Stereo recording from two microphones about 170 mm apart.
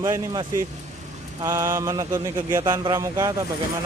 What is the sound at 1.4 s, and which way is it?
Mantra, 15° right (ahead or behind).